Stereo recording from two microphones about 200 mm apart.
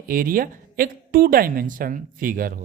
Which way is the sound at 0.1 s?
45° right (ahead or behind).